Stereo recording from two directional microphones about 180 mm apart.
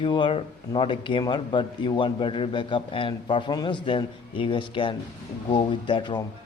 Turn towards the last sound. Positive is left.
turn(degrees=25)  # may be behind; listen again after turning